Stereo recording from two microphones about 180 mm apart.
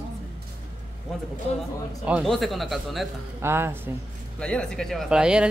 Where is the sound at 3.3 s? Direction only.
15° right (ahead or behind).